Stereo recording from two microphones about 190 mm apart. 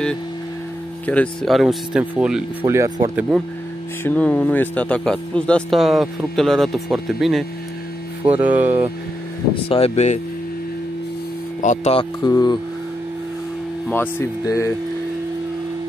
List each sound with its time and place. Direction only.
1.0 s speech: 5° left (ahead or behind)
2.6 s speech: 15° right (ahead or behind)
4.0 s speech: 10° left (ahead or behind); by 8.9 s 10° right (ahead or behind)
9.7 s speech: 30° left (ahead or behind)
11.6 s speech: 40° left (ahead or behind); by 12.5 s 20° left (ahead or behind)
13.8 s speech: 10° left (ahead or behind)